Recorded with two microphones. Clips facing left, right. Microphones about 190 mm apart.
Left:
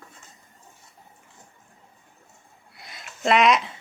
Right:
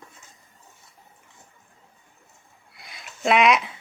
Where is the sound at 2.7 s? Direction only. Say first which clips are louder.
Left 1 dB; centre (ahead or behind).